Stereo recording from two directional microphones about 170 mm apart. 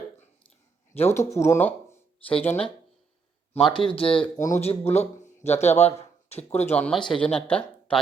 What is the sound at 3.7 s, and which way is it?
Speech, 30° left (ahead or behind).